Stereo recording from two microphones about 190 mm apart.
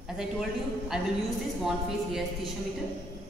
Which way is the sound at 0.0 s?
Centre (ahead or behind).